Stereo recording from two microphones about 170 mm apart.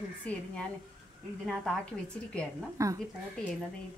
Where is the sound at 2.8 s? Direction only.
20° right (ahead or behind).